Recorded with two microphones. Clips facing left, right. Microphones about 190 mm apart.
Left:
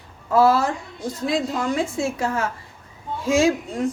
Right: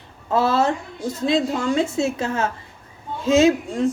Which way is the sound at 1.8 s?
25° right (ahead or behind).